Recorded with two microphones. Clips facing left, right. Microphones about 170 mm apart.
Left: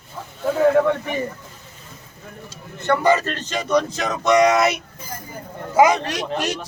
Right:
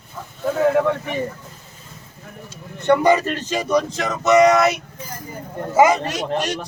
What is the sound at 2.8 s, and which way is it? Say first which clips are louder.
A man's voice: right 2 dB; 15° right (ahead or behind).